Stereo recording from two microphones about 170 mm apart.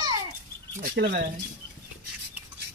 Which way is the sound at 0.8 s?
75° right (ahead or behind).